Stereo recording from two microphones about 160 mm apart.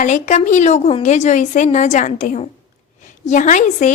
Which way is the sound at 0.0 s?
50° left (ahead or behind).